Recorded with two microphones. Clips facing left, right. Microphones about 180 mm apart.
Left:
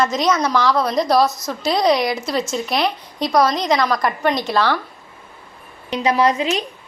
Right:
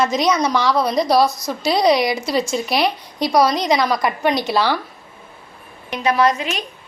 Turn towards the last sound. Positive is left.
turn(degrees=15)  # may be behind; listen again after turning